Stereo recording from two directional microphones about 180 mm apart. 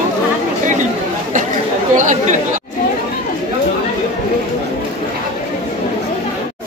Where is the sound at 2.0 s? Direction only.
45° right (ahead or behind).